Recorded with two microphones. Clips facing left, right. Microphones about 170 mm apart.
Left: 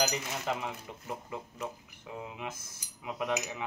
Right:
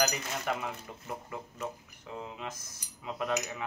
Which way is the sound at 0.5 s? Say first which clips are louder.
Even; 20° left (ahead or behind).